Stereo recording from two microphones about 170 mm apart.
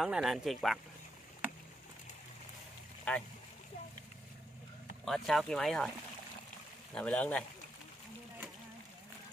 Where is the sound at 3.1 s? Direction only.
5° left (ahead or behind).